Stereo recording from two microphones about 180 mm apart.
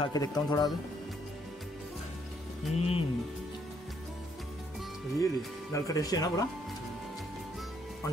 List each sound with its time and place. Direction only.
0.0 s speech: 20° left (ahead or behind)
2.7 s speech: 35° left (ahead or behind)
5.2 s speech: 20° left (ahead or behind)